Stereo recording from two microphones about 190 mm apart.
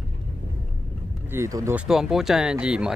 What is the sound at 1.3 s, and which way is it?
Speech, 15° right (ahead or behind).